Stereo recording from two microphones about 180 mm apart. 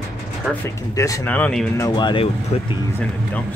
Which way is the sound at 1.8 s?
25° left (ahead or behind).